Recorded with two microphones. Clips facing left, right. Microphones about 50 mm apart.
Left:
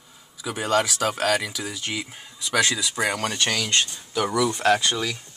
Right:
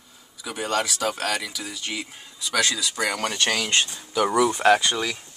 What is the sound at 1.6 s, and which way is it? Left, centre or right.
Speech, centre.